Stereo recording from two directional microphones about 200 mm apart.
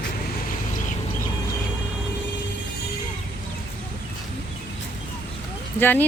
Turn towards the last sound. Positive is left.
turn(degrees=10)  # may be behind; listen again after turning